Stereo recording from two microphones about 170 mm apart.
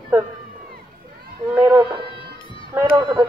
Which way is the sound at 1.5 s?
10° right (ahead or behind).